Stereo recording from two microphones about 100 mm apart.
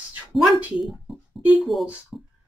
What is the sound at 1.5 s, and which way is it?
Speech, centre (ahead or behind).